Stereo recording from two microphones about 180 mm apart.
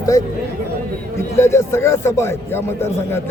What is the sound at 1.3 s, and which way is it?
A man's voice, 15° left (ahead or behind).